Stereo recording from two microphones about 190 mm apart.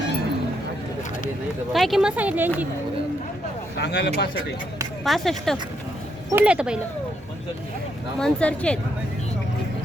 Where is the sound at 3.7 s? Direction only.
65° left (ahead or behind).